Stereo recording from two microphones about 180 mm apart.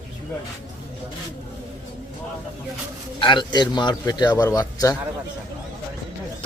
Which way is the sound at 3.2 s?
25° left (ahead or behind).